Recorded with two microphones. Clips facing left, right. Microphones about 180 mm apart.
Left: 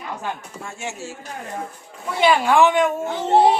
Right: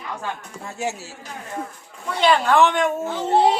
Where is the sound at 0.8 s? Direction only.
35° right (ahead or behind).